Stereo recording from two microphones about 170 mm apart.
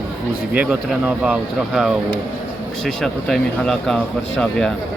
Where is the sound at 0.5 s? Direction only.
10° right (ahead or behind).